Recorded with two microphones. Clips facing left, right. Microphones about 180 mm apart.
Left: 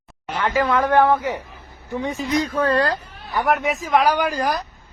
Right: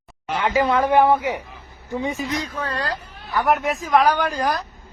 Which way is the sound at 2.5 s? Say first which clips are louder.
Left 8 dB; 55° left (ahead or behind).